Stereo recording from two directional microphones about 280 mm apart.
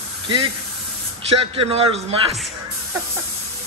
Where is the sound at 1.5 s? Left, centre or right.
Centre.